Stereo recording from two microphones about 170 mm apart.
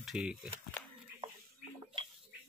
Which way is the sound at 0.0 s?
5° right (ahead or behind).